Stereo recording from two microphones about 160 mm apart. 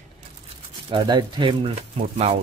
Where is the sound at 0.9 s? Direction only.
30° right (ahead or behind).